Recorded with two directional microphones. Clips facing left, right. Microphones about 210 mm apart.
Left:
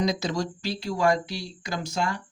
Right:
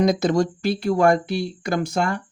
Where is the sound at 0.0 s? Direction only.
55° right (ahead or behind).